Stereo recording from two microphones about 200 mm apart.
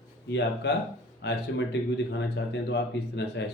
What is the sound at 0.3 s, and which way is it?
Speech, 60° left (ahead or behind).